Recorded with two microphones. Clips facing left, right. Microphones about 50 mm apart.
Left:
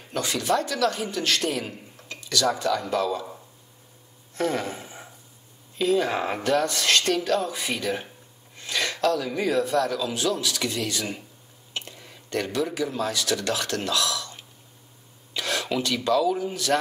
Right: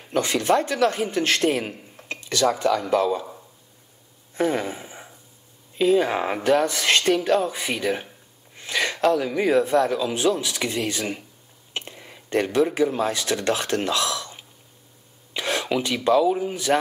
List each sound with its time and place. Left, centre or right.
0.1 s a man's voice: right
4.4 s a sound: centre
5.8 s speech: centre
11.7 s whispering: right
12.5 s speech: right
15.3 s speech: right